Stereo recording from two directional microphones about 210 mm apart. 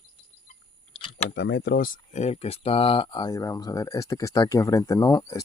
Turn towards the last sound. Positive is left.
turn(degrees=20)  # may be behind; listen again after turning